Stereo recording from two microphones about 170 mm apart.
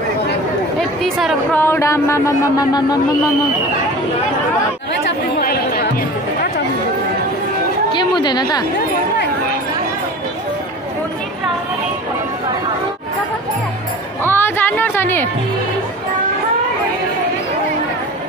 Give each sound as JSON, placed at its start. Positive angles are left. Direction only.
{"t": 1.0, "sound": "speech", "side_deg": 5}
{"t": 5.4, "sound": "chatter", "side_deg": 65}
{"t": 8.2, "sound": "a woman's voice", "side_deg": 25}
{"t": 14.2, "sound": "speech", "side_deg": 15}